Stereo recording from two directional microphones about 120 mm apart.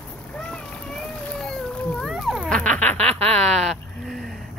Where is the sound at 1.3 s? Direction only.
5° left (ahead or behind).